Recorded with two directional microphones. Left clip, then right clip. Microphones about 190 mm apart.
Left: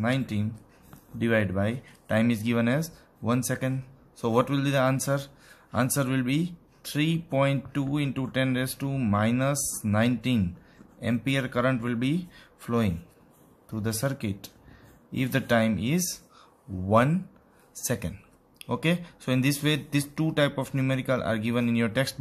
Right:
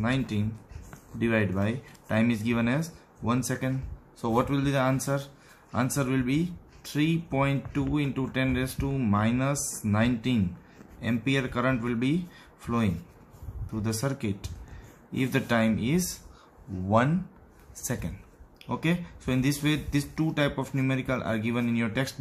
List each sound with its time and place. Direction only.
0.0 s speech: 35° left (ahead or behind)
17.7 s speech: 40° left (ahead or behind)